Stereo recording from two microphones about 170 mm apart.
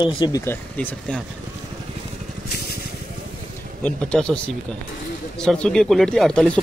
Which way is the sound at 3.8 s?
5° left (ahead or behind).